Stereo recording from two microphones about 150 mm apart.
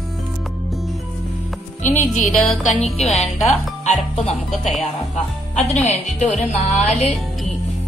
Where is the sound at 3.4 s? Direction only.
45° left (ahead or behind).